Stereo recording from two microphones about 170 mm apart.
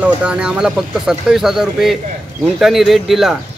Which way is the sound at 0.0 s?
5° right (ahead or behind).